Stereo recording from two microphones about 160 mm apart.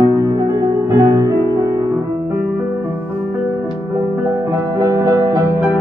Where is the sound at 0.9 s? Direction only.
20° right (ahead or behind).